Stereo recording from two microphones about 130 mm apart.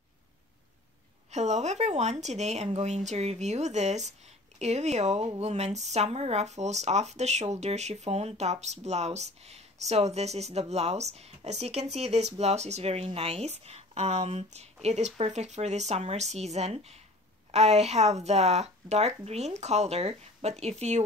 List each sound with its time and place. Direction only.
1.3 s speech: 60° right (ahead or behind)